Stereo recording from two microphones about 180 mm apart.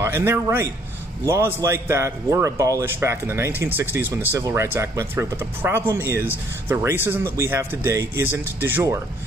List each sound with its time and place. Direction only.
0.0 s speech: 15° right (ahead or behind)